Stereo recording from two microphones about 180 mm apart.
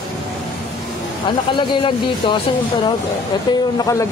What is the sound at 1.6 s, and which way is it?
Speech, 25° left (ahead or behind).